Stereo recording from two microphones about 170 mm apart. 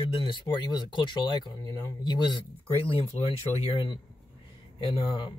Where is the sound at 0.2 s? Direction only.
30° left (ahead or behind).